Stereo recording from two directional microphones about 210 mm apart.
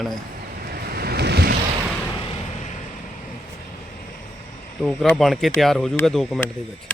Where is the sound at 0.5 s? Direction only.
45° right (ahead or behind).